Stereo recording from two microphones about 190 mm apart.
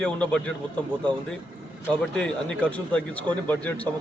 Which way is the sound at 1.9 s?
5° left (ahead or behind).